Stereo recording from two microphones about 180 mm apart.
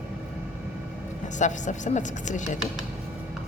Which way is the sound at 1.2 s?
40° left (ahead or behind).